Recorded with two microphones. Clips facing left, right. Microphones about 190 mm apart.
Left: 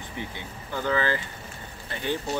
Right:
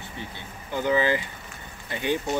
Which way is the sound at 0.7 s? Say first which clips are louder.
Right 3 dB; 15° right (ahead or behind).